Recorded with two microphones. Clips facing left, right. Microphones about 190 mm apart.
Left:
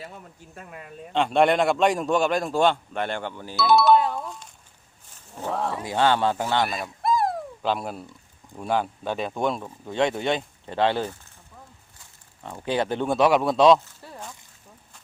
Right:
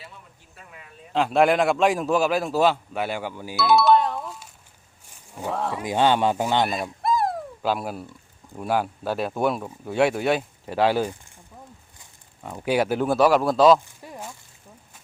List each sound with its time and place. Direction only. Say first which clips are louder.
0.0 s speech: left 6 dB; 45° left (ahead or behind)
1.1 s a man's voice: right 1 dB; centre (ahead or behind)
5.5 s a man's voice: even; centre (ahead or behind)
5.8 s speech: right 2 dB; 15° right (ahead or behind)
6.7 s a sound: right 1 dB; centre (ahead or behind)
8.5 s speech: right 1 dB; 5° right (ahead or behind)
13.8 s zipper: right 2 dB; 15° right (ahead or behind)